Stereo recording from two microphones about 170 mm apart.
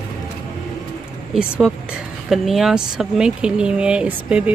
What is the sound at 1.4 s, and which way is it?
Speech, 5° right (ahead or behind).